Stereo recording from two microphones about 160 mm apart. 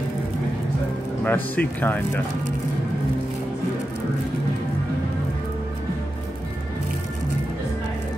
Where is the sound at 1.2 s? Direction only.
10° left (ahead or behind).